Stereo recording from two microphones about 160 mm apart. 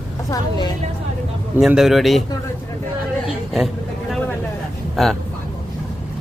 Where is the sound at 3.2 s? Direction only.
Centre (ahead or behind).